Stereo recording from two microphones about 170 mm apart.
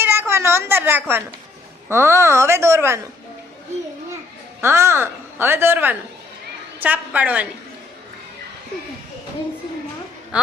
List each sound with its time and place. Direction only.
0.0 s a sound: 15° right (ahead or behind)
1.9 s a woman's voice: 15° right (ahead or behind)
4.6 s a woman's voice: 15° right (ahead or behind)